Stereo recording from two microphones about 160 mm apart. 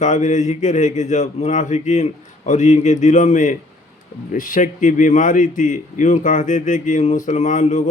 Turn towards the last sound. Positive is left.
turn(degrees=50)  # may be behind; listen again after turning